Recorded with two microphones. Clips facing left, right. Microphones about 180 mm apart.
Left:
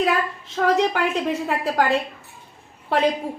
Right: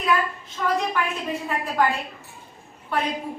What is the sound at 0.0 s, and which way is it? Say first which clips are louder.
A woman's voice: left 2 dB; 90° left.